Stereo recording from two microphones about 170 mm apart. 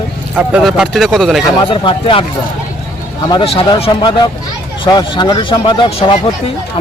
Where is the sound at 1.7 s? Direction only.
30° left (ahead or behind).